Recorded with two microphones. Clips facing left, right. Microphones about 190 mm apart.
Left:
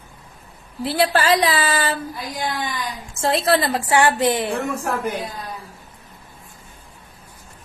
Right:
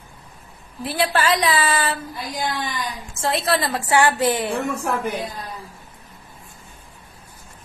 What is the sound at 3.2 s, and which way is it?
Speech, 30° left (ahead or behind).